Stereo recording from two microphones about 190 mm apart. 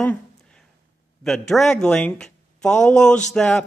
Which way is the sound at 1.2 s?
Centre (ahead or behind).